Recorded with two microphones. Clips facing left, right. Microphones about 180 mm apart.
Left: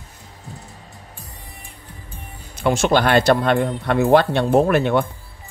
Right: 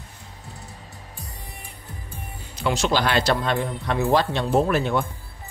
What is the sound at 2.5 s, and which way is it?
A man's voice, 50° left (ahead or behind).